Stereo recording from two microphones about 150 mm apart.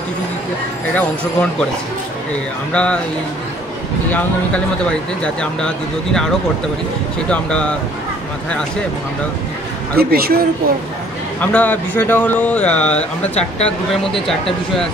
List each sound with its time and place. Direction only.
0.9 s speech: 5° left (ahead or behind)
2.7 s speech: 10° left (ahead or behind)
5.2 s speech: 5° left (ahead or behind)
7.2 s speech: 5° left (ahead or behind)
9.9 s a man's voice: 90° right
11.5 s speech: 10° left (ahead or behind)